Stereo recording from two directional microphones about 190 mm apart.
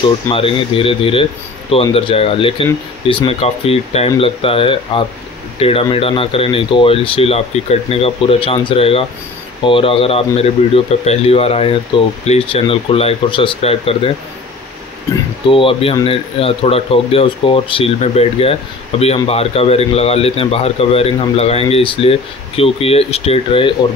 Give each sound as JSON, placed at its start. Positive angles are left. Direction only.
{"t": 0.3, "sound": "speech", "side_deg": 30}
{"t": 15.5, "sound": "speech", "side_deg": 30}